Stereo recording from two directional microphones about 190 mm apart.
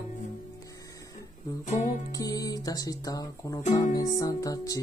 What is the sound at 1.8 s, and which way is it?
Speech, 20° left (ahead or behind).